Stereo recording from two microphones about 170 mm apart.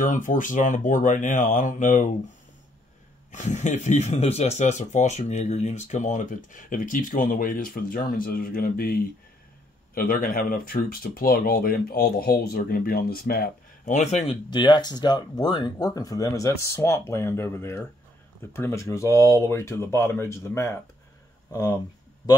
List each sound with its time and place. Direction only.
0.0 s speech: 50° left (ahead or behind)
3.3 s speech: 45° left (ahead or behind); by 21.7 s 20° left (ahead or behind)